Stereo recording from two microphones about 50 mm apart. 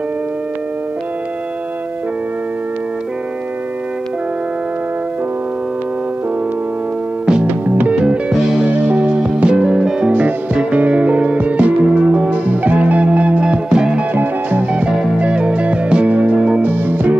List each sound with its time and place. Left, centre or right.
7.4 s music: right
7.9 s music: right
8.3 s music: centre
8.6 s music: right; by 14.0 s centre
14.1 s music: right
14.7 s music: centre
16.3 s music: centre
16.6 s music: right